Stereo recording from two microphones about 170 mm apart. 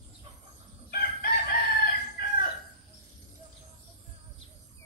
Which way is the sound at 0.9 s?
65° left (ahead or behind).